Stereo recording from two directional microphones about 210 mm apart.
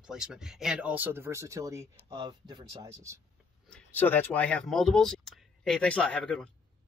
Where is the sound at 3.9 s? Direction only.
10° left (ahead or behind).